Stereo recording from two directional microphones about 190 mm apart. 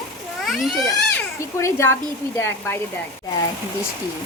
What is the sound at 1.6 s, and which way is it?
Speech, 15° left (ahead or behind).